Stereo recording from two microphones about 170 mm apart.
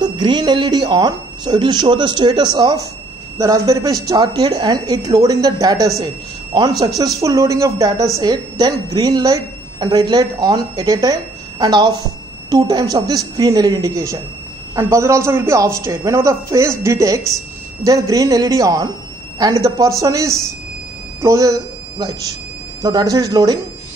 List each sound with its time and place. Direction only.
0.0 s a woman's voice: 25° right (ahead or behind)